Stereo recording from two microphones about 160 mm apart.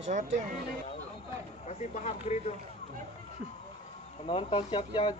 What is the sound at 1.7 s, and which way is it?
Speech, 45° left (ahead or behind).